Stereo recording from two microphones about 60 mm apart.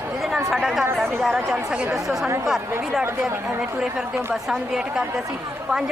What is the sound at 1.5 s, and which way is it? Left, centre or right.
Speech, centre.